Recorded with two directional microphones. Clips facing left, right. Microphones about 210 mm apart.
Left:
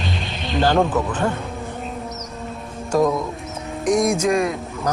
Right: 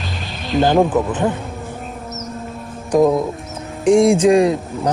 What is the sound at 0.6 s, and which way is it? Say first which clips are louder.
Speech: right 4 dB; 20° right (ahead or behind).